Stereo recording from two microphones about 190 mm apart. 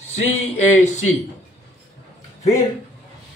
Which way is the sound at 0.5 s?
40° left (ahead or behind).